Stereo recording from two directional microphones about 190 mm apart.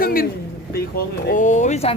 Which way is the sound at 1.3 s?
40° left (ahead or behind).